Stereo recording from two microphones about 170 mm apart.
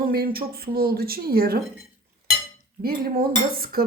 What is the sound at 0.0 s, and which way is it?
Speech, 65° right (ahead or behind).